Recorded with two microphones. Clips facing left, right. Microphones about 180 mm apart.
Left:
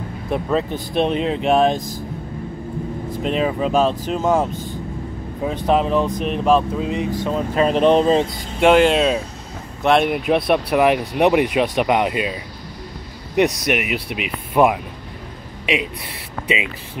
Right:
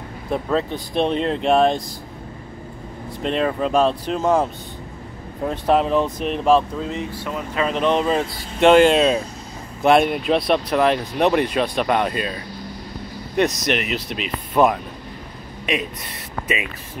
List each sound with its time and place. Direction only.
0.3 s speech: 5° left (ahead or behind)
3.2 s speech: 5° left (ahead or behind)
6.8 s speech: 15° left (ahead or behind)
7.2 s speech: 30° left (ahead or behind)
8.5 s speech: 5° left (ahead or behind)
13.7 s speech: 10° left (ahead or behind)